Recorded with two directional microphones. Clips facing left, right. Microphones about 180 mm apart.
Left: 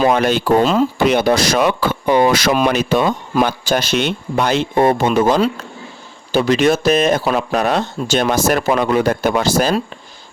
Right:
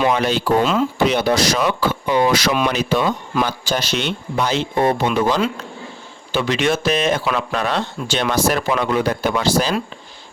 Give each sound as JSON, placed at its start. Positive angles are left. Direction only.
{"t": 0.1, "sound": "speech", "side_deg": 50}
{"t": 1.0, "sound": "speech", "side_deg": 50}